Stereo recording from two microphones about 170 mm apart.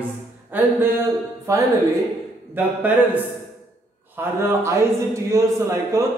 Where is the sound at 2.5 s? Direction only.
10° right (ahead or behind).